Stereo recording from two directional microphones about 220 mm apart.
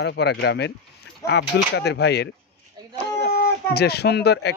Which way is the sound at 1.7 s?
50° left (ahead or behind).